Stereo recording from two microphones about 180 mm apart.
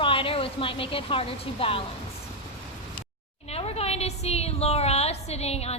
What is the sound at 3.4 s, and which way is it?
A woman's voice, 35° left (ahead or behind).